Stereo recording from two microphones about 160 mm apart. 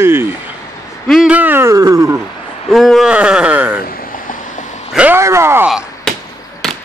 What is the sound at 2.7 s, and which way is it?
Speech, centre (ahead or behind).